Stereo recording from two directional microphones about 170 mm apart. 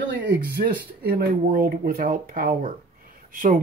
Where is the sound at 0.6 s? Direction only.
60° right (ahead or behind).